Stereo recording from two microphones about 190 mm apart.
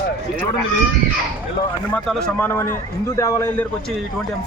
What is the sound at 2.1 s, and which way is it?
A man's voice, 5° left (ahead or behind).